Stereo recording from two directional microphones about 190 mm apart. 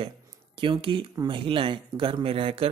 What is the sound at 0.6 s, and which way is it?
Speech, 25° right (ahead or behind).